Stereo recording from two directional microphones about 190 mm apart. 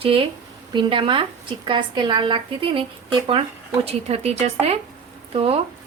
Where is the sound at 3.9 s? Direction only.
35° right (ahead or behind).